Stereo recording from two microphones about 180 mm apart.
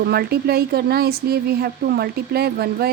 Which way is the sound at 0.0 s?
60° right (ahead or behind).